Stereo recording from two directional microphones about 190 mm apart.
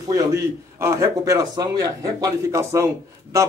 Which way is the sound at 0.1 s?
15° right (ahead or behind).